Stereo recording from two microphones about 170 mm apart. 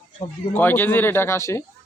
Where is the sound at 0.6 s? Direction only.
10° left (ahead or behind).